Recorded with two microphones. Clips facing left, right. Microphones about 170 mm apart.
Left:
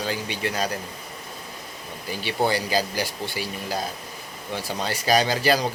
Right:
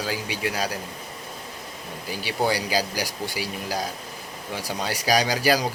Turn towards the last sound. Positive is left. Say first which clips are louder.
# left 1 dB
turn(degrees=-10)  # may be behind; listen again after turning